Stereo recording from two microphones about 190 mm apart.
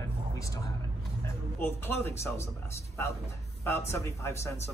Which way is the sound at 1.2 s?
10° left (ahead or behind).